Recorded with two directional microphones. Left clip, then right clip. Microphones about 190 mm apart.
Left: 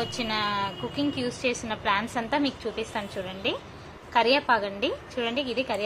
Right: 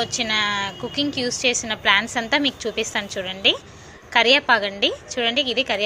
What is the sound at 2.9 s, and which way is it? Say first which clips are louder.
Speech: right 7 dB; 10° right (ahead or behind).